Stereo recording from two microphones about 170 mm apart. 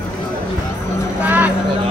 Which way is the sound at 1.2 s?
10° right (ahead or behind).